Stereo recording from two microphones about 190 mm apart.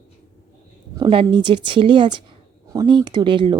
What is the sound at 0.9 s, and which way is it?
Speech, 25° right (ahead or behind).